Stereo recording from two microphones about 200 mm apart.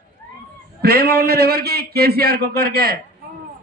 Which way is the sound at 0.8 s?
50° right (ahead or behind).